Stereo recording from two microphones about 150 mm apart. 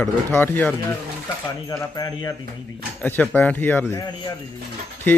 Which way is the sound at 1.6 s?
25° left (ahead or behind).